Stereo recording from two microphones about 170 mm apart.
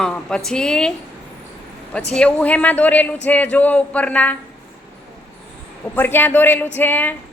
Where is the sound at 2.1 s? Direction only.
5° left (ahead or behind).